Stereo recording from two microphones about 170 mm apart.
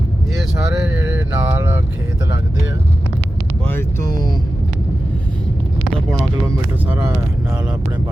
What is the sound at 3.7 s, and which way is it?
Speech, 15° left (ahead or behind).